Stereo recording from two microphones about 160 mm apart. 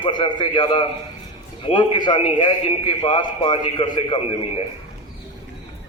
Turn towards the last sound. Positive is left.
turn(degrees=35)  # may be behind; listen again after turning